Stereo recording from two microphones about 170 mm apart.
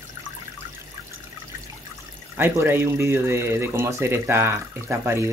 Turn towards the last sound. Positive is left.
turn(degrees=-15)  # may be behind; listen again after turning